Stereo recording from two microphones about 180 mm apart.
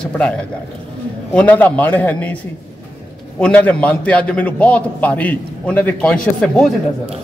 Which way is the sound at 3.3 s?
5° left (ahead or behind).